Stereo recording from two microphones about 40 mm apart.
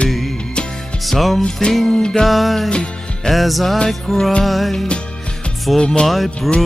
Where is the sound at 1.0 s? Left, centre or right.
Centre.